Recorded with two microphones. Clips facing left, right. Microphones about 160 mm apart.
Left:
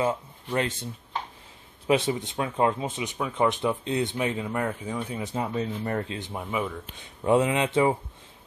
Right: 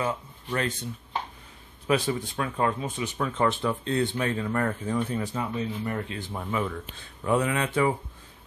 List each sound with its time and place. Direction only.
0.0 s speech: 25° left (ahead or behind)
1.9 s speech: 25° left (ahead or behind)
5.2 s speech: 25° left (ahead or behind)
6.4 s speech: 10° left (ahead or behind)
7.2 s speech: 20° left (ahead or behind)